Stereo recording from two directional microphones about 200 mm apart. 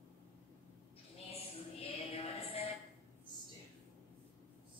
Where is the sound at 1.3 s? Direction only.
30° left (ahead or behind).